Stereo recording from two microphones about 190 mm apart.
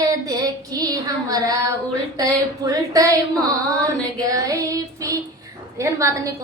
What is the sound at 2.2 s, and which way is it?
Speech, 20° right (ahead or behind).